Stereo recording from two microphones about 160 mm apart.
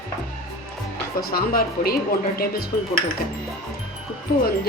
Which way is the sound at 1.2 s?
70° left (ahead or behind).